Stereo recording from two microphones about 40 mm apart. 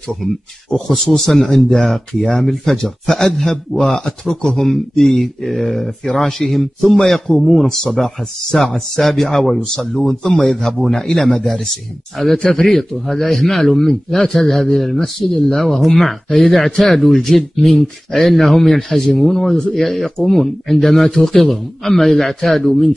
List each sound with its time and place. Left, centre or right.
0.7 s a man's voice: centre
12.4 s a man's voice: left
12.6 s a man's voice: centre